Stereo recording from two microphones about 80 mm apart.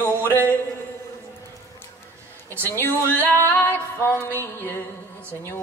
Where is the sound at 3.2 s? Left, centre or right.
Right.